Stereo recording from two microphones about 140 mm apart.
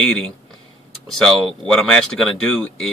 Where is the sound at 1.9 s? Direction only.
5° left (ahead or behind).